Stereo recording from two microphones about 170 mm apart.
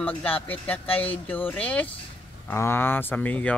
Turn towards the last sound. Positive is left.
turn(degrees=10)  # may be behind; listen again after turning